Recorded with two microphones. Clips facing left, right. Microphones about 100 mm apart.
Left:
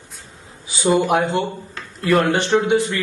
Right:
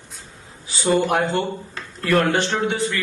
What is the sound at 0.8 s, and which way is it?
Speech, 5° left (ahead or behind).